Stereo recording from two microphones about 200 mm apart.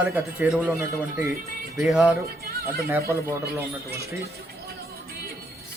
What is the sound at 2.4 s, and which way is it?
Music, 50° right (ahead or behind).